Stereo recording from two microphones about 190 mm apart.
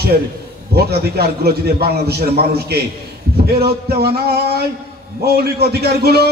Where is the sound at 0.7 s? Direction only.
55° right (ahead or behind).